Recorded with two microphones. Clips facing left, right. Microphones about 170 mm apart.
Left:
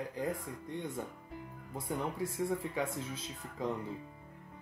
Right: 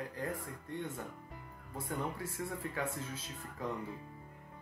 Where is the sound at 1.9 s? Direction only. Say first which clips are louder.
Left 3 dB; 15° left (ahead or behind).